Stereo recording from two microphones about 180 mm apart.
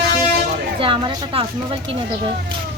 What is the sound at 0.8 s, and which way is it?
Speech, 30° right (ahead or behind).